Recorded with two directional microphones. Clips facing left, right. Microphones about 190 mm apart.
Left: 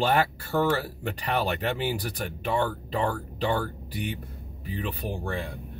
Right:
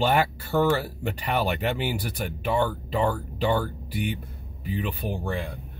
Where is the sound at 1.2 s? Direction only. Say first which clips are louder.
Right 1 dB; 10° right (ahead or behind).